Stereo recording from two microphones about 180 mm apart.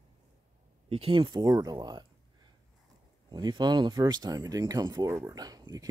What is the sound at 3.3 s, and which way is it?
Speech, 25° right (ahead or behind).